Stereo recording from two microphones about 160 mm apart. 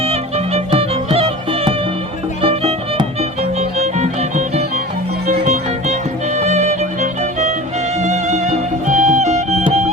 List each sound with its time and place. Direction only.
0.0 s music: 40° right (ahead or behind)